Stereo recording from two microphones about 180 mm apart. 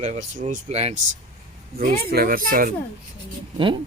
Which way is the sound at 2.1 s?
55° right (ahead or behind).